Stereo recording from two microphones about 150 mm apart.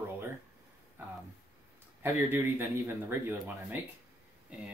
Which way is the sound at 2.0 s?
15° right (ahead or behind).